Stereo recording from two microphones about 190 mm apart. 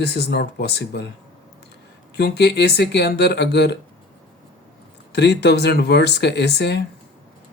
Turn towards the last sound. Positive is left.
turn(degrees=60)  # may be behind; listen again after turning